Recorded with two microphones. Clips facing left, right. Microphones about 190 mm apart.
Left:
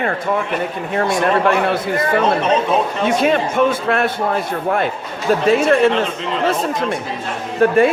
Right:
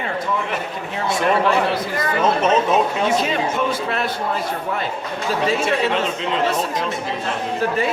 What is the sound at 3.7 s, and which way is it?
Speech, 55° left (ahead or behind).